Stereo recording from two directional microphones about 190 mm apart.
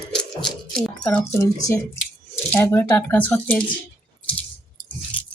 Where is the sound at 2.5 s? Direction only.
10° left (ahead or behind).